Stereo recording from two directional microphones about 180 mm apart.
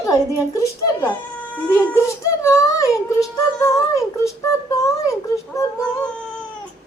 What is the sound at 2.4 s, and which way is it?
Speech, 20° left (ahead or behind).